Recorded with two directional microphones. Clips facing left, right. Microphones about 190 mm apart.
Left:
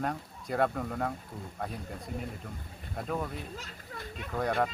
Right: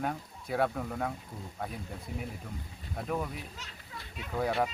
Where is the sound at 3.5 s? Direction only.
50° left (ahead or behind).